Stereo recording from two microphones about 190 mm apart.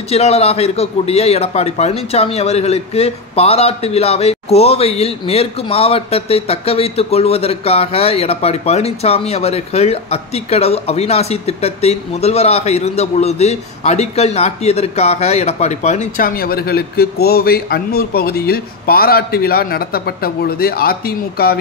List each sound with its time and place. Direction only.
0.1 s a man's voice: 35° left (ahead or behind); by 21.5 s 55° left (ahead or behind)